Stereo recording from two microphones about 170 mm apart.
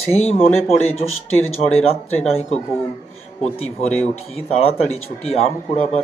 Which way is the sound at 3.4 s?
35° left (ahead or behind).